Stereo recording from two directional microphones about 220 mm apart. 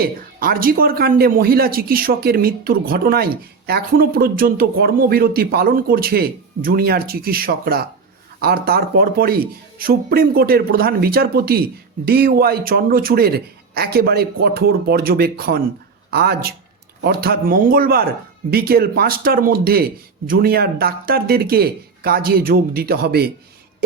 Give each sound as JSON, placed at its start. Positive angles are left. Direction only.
{"t": 0.0, "sound": "a man's voice", "side_deg": -40}